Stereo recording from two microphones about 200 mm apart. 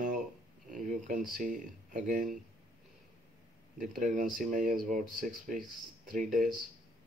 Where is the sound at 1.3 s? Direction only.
40° right (ahead or behind).